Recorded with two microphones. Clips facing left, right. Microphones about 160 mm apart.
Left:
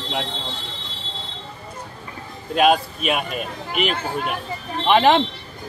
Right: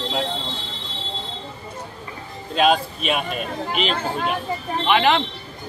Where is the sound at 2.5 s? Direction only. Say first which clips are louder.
Left 1 dB; 5° left (ahead or behind).